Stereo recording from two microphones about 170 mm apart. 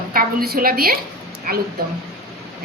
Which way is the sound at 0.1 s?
60° right (ahead or behind).